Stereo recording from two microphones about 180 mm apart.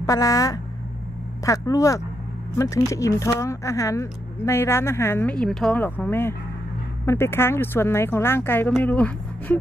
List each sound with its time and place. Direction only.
0.0 s speech: 20° left (ahead or behind)